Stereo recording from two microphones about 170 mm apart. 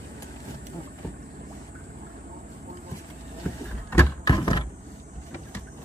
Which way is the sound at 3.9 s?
15° left (ahead or behind).